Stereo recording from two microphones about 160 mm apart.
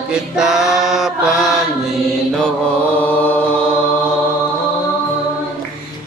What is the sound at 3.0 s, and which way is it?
Chant, 10° left (ahead or behind).